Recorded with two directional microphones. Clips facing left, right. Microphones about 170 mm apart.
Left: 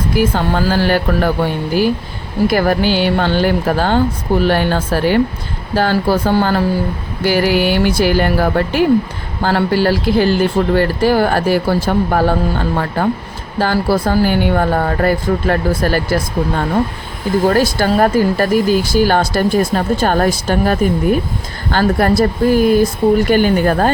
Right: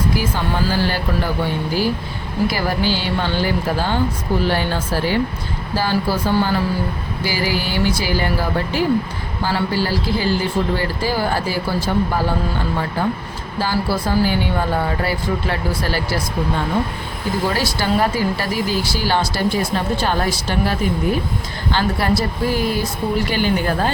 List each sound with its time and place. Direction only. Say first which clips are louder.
0.2 s speech: left 6 dB; 60° left (ahead or behind)
2.5 s speech: left 9 dB; 55° left (ahead or behind)
17.4 s speech: left 8 dB; 50° left (ahead or behind)